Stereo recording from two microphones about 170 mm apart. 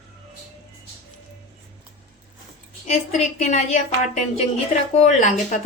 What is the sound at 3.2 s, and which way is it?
Speech, 40° left (ahead or behind).